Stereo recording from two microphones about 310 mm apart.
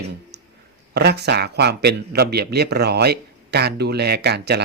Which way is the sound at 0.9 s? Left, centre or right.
Right.